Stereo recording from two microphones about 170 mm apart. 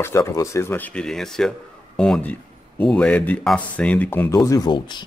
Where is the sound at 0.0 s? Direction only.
20° left (ahead or behind).